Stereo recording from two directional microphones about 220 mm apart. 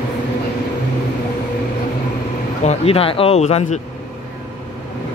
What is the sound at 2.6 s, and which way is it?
Speech, 30° left (ahead or behind).